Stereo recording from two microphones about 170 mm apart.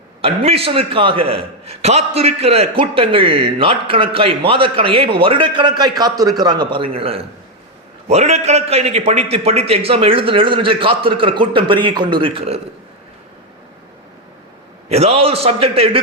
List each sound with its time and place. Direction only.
0.2 s a man's voice: 35° right (ahead or behind)
14.8 s a man's voice: 40° right (ahead or behind)